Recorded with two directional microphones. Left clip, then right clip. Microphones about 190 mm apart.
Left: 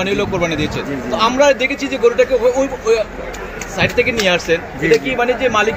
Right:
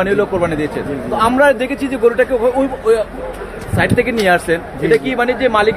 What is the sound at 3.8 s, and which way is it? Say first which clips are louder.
A man's voice: right 1 dB; 45° right (ahead or behind).